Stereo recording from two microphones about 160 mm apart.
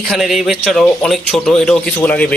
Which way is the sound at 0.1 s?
Centre (ahead or behind).